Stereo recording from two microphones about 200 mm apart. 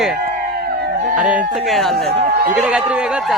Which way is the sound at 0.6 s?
50° right (ahead or behind).